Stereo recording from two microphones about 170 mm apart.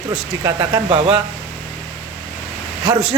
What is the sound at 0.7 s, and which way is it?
Speech, 30° right (ahead or behind).